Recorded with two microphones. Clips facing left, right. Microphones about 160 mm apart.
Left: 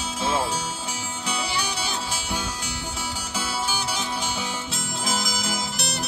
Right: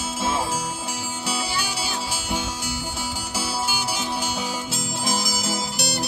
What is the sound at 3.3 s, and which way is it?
Music, 5° right (ahead or behind).